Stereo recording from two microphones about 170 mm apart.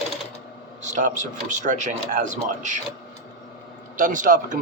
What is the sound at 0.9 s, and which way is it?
Speech, 50° right (ahead or behind).